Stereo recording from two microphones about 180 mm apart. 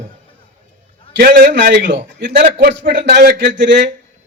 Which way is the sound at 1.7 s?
75° right (ahead or behind).